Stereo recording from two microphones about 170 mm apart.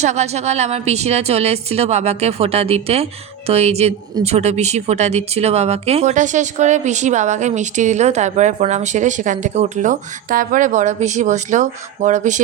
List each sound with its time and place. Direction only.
0.0 s a woman's voice: 40° right (ahead or behind)